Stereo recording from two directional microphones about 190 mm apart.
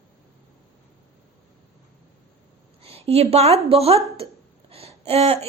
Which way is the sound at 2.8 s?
30° right (ahead or behind).